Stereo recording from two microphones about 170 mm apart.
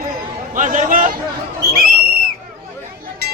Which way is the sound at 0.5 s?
50° right (ahead or behind).